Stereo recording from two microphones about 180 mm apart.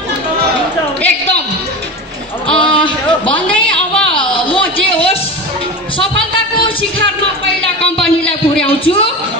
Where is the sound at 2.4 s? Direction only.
30° left (ahead or behind).